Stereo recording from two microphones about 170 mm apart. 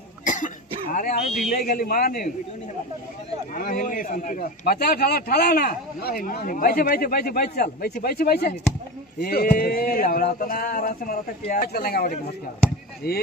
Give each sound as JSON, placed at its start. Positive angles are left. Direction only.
{"t": 0.2, "sound": "cough", "side_deg": 50}
{"t": 0.9, "sound": "speech", "side_deg": 50}
{"t": 1.5, "sound": "a man's voice", "side_deg": 65}
{"t": 3.5, "sound": "a man's voice", "side_deg": 55}